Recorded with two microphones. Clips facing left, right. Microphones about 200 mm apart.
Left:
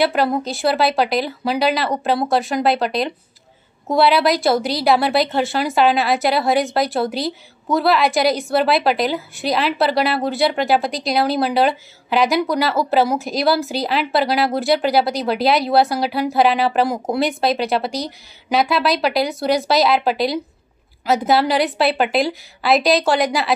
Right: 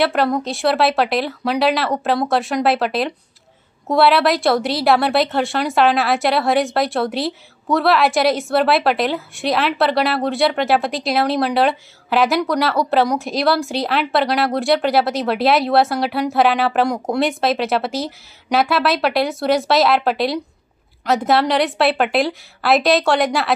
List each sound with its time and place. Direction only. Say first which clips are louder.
0.0 s a woman's voice: even; centre (ahead or behind)